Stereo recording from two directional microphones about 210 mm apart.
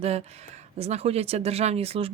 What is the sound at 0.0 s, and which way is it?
Speech, 30° right (ahead or behind).